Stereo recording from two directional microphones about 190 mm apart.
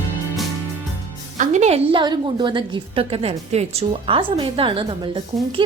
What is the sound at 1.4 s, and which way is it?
A woman's voice, 40° right (ahead or behind).